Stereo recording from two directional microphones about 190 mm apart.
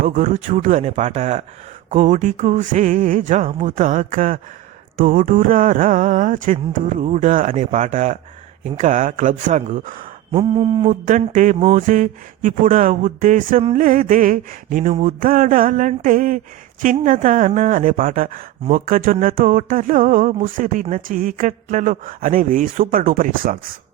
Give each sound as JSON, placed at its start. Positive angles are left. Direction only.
{"t": 0.0, "sound": "music", "side_deg": -45}
{"t": 10.3, "sound": "a sound", "side_deg": -30}
{"t": 11.0, "sound": "speech", "side_deg": -45}